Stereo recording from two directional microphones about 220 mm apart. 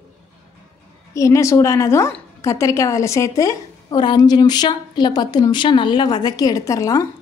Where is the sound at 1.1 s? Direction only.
15° left (ahead or behind).